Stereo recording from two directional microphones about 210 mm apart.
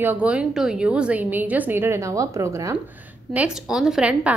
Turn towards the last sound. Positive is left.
turn(degrees=-5)  # may be behind; listen again after turning